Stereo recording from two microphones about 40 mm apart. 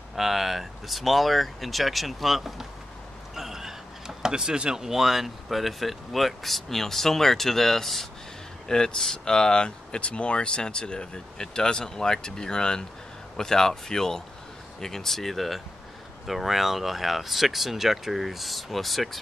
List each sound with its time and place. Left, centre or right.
0.1 s speech: centre
3.3 s a sound: centre
4.2 s speech: centre